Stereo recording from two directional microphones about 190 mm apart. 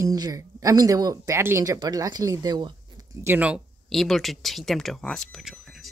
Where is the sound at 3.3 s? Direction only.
5° right (ahead or behind).